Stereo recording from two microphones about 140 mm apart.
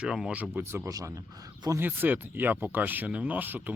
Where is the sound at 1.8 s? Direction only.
15° right (ahead or behind).